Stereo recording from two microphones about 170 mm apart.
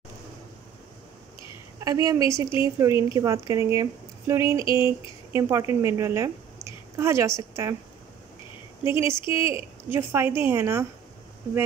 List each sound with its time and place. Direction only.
1.9 s a woman's voice: 20° right (ahead or behind)
8.8 s speech: 15° right (ahead or behind)